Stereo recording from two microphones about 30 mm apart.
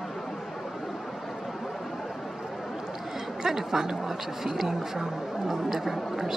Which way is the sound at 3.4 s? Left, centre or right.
Centre.